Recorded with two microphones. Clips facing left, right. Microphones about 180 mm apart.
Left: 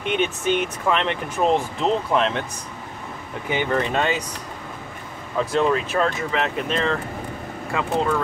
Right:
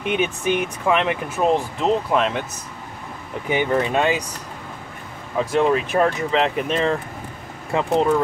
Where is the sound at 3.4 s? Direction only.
15° right (ahead or behind).